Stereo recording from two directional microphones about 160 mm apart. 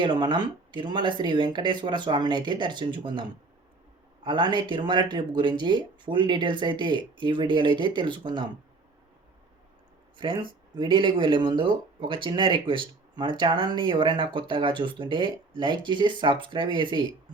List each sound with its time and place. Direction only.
0.0 s speech: 30° right (ahead or behind)
10.2 s speech: 30° right (ahead or behind)